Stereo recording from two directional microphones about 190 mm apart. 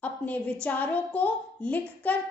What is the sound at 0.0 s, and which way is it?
A woman's voice, 10° left (ahead or behind).